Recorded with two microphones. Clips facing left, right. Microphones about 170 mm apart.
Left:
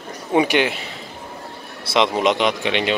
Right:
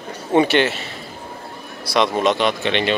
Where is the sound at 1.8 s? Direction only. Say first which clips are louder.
Even; 25° left (ahead or behind).